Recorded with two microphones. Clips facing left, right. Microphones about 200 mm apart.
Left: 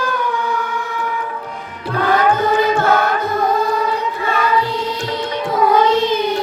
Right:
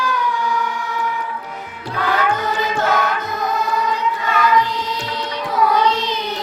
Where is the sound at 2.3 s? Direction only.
55° left (ahead or behind).